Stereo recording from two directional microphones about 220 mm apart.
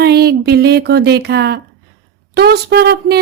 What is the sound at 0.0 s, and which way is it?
A woman's voice, 45° right (ahead or behind).